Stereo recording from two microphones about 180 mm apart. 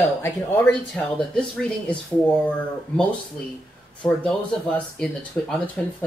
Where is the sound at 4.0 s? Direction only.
5° left (ahead or behind).